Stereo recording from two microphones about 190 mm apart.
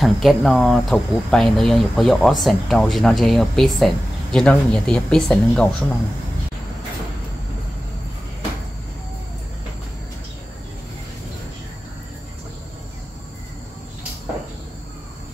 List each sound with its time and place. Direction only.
0.0 s speech: centre (ahead or behind)